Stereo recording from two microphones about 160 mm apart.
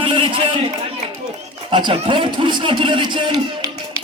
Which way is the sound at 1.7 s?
30° right (ahead or behind).